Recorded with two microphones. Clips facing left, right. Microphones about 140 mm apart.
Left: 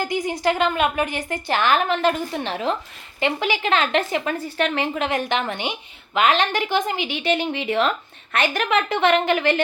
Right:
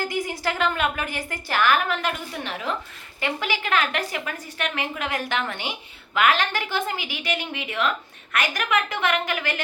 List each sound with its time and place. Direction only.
0.0 s speech: 20° left (ahead or behind)